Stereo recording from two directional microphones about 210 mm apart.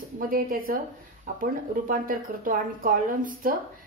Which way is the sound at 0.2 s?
45° right (ahead or behind).